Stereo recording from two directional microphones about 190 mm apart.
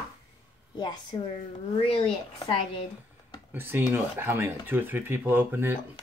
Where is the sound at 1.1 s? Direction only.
25° left (ahead or behind).